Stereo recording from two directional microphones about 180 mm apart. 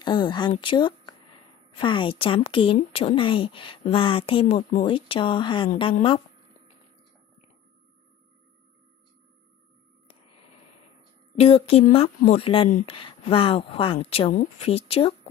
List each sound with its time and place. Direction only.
0.0 s a woman's voice: 25° left (ahead or behind)
11.3 s speech: 35° left (ahead or behind)